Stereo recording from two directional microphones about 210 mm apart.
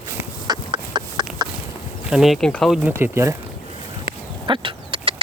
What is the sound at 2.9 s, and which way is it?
Speech, 10° right (ahead or behind).